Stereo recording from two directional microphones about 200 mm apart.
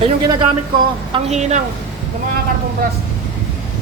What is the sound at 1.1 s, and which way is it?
Speech, 35° right (ahead or behind).